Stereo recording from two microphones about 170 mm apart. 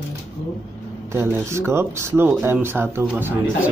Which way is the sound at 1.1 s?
15° right (ahead or behind).